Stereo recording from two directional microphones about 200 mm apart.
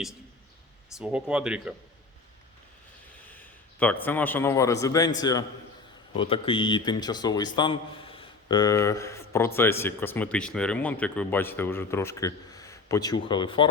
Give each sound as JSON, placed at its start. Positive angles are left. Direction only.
{"t": 0.9, "sound": "speech", "side_deg": -5}
{"t": 3.2, "sound": "a sound", "side_deg": 10}
{"t": 4.0, "sound": "a man's voice", "side_deg": 10}